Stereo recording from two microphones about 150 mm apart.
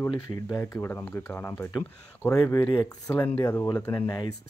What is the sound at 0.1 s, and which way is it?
Speech, 25° left (ahead or behind).